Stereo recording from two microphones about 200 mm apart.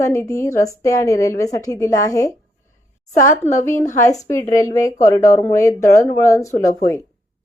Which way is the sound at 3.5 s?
35° left (ahead or behind).